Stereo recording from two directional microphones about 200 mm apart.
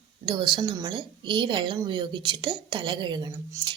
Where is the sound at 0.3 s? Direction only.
25° right (ahead or behind).